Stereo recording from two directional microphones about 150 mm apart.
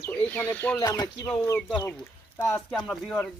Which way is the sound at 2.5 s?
5° left (ahead or behind).